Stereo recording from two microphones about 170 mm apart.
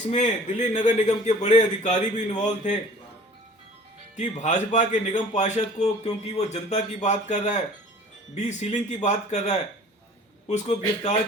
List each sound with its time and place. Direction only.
0.1 s speech: 45° left (ahead or behind)
4.1 s speech: 45° left (ahead or behind)